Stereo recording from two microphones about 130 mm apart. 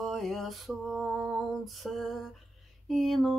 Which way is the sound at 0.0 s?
Centre (ahead or behind).